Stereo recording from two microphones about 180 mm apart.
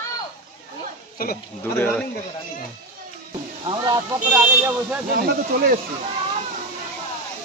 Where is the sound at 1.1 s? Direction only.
55° left (ahead or behind).